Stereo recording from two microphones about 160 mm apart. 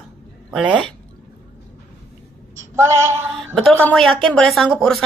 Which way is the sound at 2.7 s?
15° right (ahead or behind).